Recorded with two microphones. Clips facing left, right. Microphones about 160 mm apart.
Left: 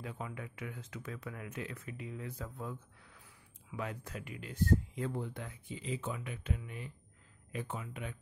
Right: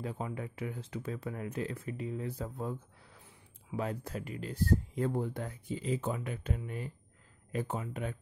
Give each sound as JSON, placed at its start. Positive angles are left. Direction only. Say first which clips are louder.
{"t": 0.0, "sound": "speech", "louder": "right 5 dB", "side_deg": -35}